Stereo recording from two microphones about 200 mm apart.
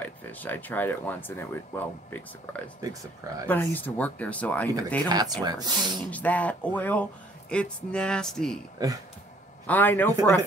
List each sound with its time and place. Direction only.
0.0 s speech: 10° left (ahead or behind)
2.8 s speech: 15° right (ahead or behind)
3.4 s speech: 10° left (ahead or behind)
5.0 s speech: 20° right (ahead or behind)
6.0 s speech: 5° left (ahead or behind)
8.8 s speech: 20° right (ahead or behind)
9.7 s speech: 10° left (ahead or behind)